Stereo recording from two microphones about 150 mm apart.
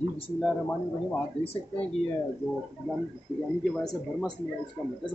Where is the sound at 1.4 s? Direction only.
40° left (ahead or behind).